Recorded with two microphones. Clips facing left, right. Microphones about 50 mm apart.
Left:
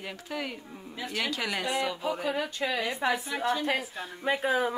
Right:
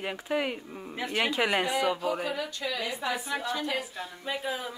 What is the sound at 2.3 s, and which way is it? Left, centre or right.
Speech, left.